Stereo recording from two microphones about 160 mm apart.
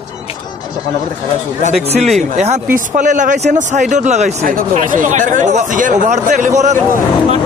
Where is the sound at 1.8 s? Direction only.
40° right (ahead or behind).